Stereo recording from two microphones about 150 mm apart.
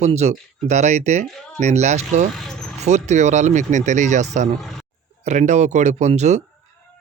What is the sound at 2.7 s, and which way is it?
Speech, 50° right (ahead or behind).